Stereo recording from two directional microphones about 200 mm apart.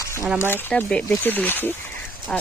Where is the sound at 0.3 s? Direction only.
10° left (ahead or behind).